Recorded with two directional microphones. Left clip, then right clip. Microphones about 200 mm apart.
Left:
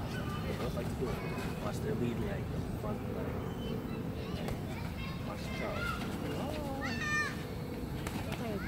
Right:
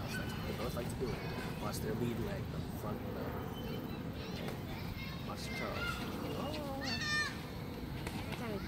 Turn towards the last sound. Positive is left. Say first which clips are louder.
# left 2 dB
turn(degrees=-50)  # may be behind; listen again after turning